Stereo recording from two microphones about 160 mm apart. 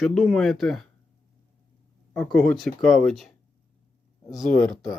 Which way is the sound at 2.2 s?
5° left (ahead or behind).